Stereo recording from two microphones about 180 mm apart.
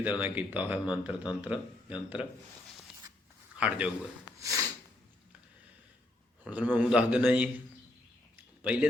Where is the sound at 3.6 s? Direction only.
5° right (ahead or behind).